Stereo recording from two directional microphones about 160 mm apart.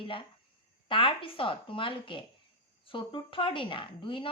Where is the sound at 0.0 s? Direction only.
35° left (ahead or behind).